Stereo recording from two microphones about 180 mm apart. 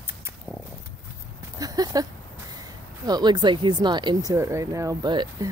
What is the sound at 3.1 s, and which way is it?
Speech, 25° right (ahead or behind).